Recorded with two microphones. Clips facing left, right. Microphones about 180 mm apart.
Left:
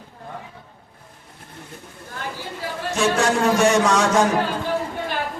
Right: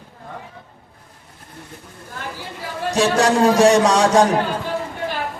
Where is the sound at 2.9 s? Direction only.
35° right (ahead or behind).